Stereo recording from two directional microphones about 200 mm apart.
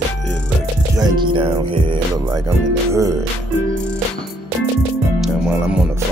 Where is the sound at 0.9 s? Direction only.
20° right (ahead or behind).